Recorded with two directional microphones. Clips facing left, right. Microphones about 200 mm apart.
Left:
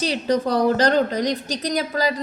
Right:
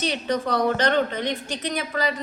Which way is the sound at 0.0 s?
35° left (ahead or behind).